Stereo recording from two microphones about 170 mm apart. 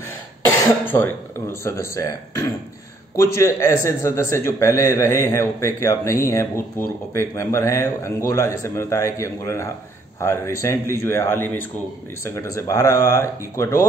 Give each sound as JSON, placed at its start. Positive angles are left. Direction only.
{"t": 1.5, "sound": "a man's voice", "side_deg": 15}